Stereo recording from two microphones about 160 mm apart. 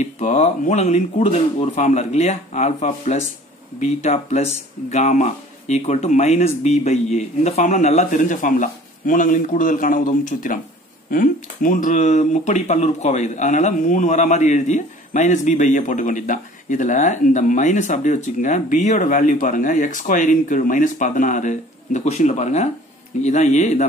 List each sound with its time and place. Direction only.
0.0 s speech: 45° left (ahead or behind)